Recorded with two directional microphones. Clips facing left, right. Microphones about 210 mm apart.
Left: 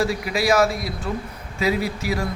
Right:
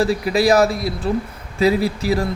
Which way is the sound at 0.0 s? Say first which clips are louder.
Right 5 dB; 35° right (ahead or behind).